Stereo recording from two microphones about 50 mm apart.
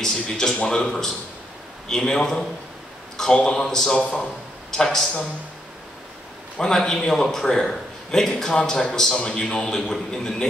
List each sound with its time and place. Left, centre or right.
0.0 s a man's voice: centre
4.6 s speech: centre
6.6 s a man's voice: centre